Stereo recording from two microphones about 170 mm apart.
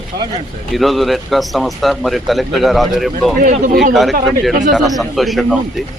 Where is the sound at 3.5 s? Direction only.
50° right (ahead or behind).